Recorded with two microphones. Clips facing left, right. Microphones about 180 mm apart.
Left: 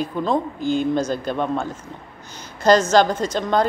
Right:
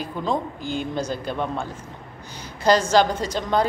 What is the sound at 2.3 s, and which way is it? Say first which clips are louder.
A woman's voice: left 3 dB; 10° right (ahead or behind).